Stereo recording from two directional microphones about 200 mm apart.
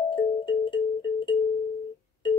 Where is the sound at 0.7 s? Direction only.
25° left (ahead or behind).